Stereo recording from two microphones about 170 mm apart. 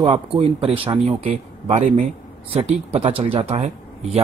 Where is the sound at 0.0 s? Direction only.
35° right (ahead or behind).